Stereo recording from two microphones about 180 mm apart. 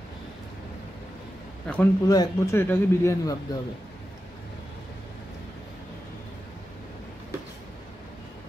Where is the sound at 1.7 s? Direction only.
10° left (ahead or behind).